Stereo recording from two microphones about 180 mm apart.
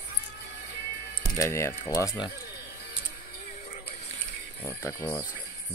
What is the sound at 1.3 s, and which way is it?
Speech, 15° left (ahead or behind).